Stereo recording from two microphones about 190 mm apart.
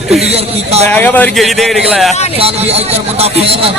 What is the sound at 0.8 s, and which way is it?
A man's voice, 10° left (ahead or behind).